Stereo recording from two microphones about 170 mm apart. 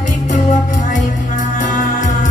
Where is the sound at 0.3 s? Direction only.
45° left (ahead or behind).